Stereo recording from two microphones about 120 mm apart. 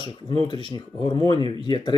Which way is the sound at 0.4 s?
40° left (ahead or behind).